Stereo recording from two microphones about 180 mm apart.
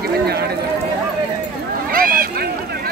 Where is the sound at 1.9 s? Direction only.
55° right (ahead or behind).